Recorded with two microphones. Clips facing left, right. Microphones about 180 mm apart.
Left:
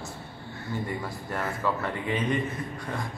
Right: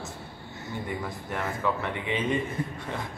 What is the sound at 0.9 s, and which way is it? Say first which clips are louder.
Mantra: even; centre (ahead or behind).